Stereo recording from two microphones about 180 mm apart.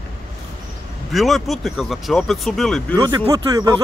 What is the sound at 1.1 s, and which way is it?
Speech, centre (ahead or behind).